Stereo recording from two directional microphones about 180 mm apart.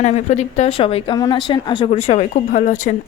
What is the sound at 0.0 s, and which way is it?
A woman's voice, 40° left (ahead or behind).